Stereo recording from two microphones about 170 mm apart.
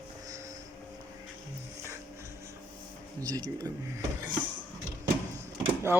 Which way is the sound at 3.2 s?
20° right (ahead or behind).